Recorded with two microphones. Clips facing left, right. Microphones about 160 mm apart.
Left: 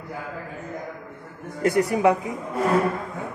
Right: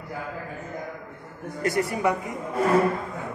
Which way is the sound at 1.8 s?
15° left (ahead or behind).